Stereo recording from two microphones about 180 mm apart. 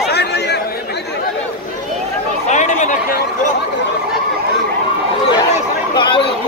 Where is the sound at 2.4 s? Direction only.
40° left (ahead or behind).